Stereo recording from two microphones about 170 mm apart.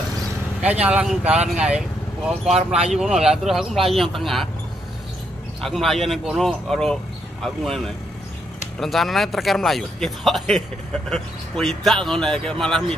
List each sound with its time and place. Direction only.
0.6 s speech: 5° right (ahead or behind)
5.6 s speech: centre (ahead or behind)